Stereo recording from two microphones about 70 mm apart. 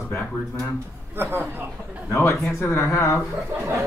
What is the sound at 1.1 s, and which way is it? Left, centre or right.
Speech, right.